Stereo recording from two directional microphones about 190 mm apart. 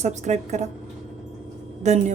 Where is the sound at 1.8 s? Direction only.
35° right (ahead or behind).